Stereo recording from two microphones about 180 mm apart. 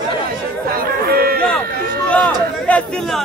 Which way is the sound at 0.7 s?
55° right (ahead or behind).